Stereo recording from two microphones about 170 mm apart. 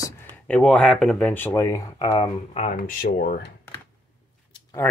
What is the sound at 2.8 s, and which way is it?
Speech, 60° left (ahead or behind).